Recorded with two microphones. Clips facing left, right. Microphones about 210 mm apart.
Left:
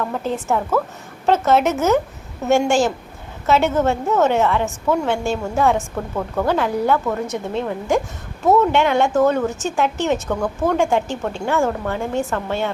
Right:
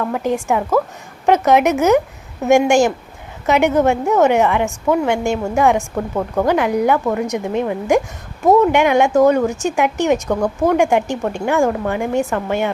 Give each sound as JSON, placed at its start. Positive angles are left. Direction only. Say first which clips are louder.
{"t": 0.1, "sound": "a woman's voice", "louder": "right 3 dB", "side_deg": -15}